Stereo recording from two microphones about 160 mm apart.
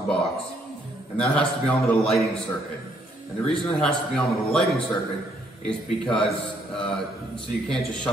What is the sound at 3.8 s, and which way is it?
A man's voice, 5° left (ahead or behind).